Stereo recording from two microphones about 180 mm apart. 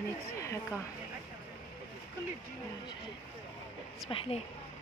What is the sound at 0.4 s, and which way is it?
Speech, 15° left (ahead or behind).